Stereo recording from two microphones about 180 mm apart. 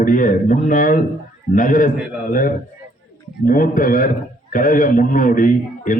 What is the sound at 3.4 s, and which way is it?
A man's voice, 50° left (ahead or behind).